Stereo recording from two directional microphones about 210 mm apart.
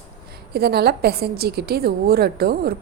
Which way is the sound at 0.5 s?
50° right (ahead or behind).